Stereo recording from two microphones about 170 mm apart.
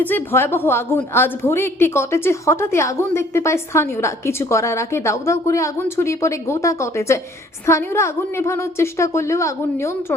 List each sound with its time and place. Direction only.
0.0 s a woman's voice: 10° left (ahead or behind)